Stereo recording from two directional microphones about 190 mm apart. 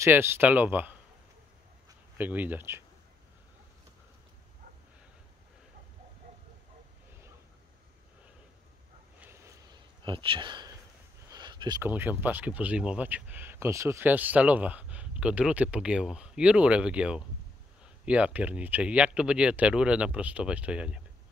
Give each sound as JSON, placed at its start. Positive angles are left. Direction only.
{"t": 0.0, "sound": "speech", "side_deg": -10}
{"t": 9.2, "sound": "a sound", "side_deg": -15}
{"t": 11.8, "sound": "speech", "side_deg": -10}